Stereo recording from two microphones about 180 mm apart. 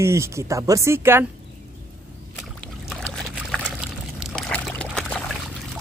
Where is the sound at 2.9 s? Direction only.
5° left (ahead or behind).